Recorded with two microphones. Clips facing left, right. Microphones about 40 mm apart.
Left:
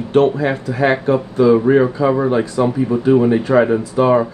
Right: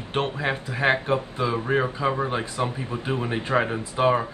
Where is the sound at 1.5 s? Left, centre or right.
Left.